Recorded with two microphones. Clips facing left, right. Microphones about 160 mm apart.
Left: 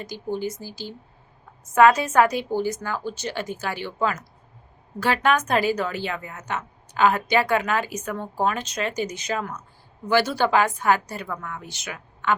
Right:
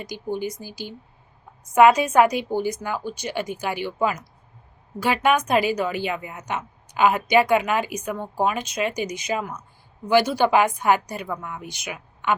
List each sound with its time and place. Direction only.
0.0 s a woman's voice: 15° right (ahead or behind)